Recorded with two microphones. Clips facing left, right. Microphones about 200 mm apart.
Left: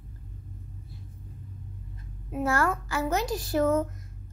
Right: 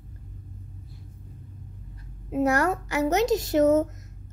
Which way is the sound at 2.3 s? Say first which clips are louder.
Right 4 dB; 20° right (ahead or behind).